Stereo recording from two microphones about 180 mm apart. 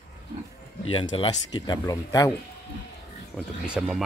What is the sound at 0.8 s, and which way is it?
Speech, 30° left (ahead or behind).